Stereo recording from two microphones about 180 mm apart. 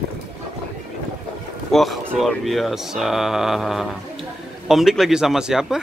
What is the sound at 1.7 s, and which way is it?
A man's voice, centre (ahead or behind).